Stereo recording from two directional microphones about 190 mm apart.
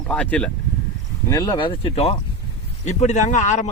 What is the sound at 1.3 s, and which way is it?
A man's voice, 20° left (ahead or behind).